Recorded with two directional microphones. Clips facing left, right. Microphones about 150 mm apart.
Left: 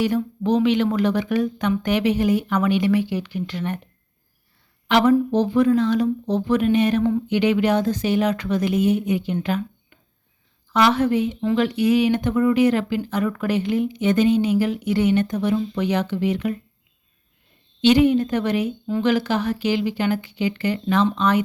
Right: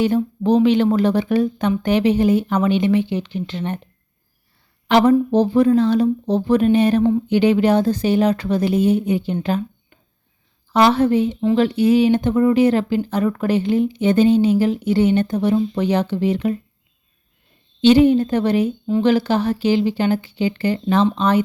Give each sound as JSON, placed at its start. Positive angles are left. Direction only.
{"t": 0.0, "sound": "speech", "side_deg": -30}
{"t": 4.9, "sound": "speech", "side_deg": -35}
{"t": 17.7, "sound": "speech", "side_deg": -30}